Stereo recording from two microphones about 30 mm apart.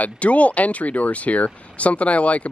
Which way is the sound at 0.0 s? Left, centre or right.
Left.